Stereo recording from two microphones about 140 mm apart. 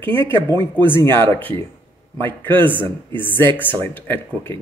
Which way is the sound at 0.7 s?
15° left (ahead or behind).